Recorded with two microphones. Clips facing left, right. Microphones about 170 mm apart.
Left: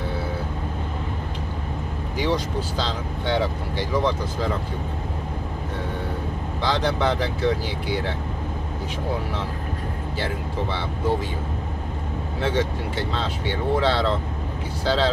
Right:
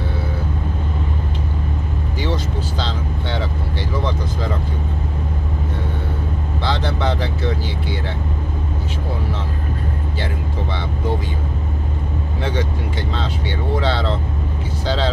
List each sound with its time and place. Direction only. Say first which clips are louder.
2.1 s speech: left 1 dB; 10° left (ahead or behind)
6.6 s speech: even; 10° left (ahead or behind)
13.7 s speech: even; 5° left (ahead or behind)